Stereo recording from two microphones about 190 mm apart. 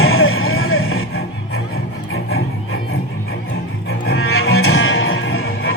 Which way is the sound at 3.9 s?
90° left.